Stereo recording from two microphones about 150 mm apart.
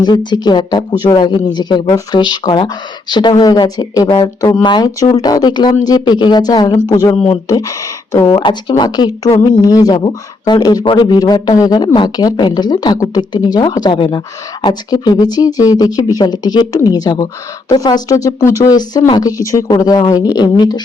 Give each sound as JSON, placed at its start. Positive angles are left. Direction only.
{"t": 0.3, "sound": "speech", "side_deg": 30}
{"t": 8.3, "sound": "speech", "side_deg": 35}